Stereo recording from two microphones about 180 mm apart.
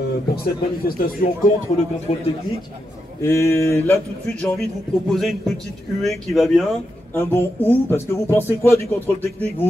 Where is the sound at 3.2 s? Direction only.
15° left (ahead or behind); by 6.8 s centre (ahead or behind).